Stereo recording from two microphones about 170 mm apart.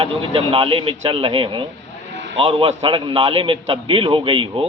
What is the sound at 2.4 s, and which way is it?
A man's voice, 35° right (ahead or behind).